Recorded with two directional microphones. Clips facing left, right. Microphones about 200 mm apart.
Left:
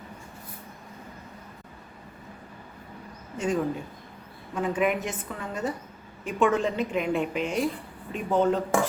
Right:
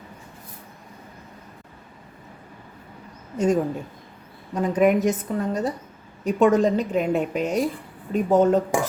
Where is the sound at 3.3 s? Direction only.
40° right (ahead or behind).